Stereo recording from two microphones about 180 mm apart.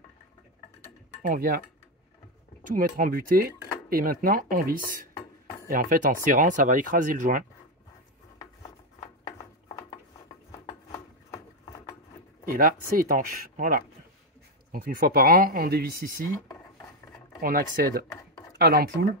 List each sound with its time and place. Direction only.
1.2 s speech: 50° right (ahead or behind)
2.7 s speech: 50° right (ahead or behind)
10.9 s a sound: 20° left (ahead or behind)
12.4 s speech: 50° right (ahead or behind)
17.4 s speech: 50° right (ahead or behind)